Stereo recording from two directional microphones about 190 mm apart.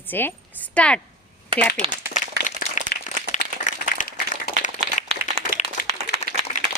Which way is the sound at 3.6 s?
45° left (ahead or behind).